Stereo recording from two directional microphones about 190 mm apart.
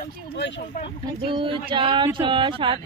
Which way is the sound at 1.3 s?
25° right (ahead or behind).